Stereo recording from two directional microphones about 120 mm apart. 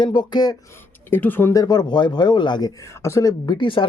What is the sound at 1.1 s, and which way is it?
Speech, 15° left (ahead or behind).